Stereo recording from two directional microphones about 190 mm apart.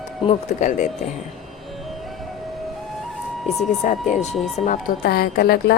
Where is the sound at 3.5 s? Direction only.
35° left (ahead or behind).